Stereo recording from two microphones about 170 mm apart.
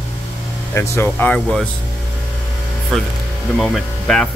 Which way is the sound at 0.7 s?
15° left (ahead or behind).